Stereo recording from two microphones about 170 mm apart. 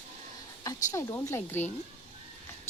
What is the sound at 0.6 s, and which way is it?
Speech, 20° left (ahead or behind).